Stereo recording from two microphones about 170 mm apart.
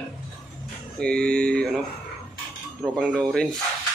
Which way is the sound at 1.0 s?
5° left (ahead or behind).